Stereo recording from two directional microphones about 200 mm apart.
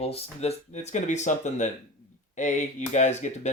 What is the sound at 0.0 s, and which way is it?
Speech, 30° left (ahead or behind).